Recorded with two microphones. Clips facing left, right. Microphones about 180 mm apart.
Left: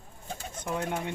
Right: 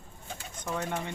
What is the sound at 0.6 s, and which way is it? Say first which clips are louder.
Speech: left 1 dB; 10° left (ahead or behind).